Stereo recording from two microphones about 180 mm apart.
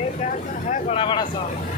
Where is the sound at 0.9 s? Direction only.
30° left (ahead or behind).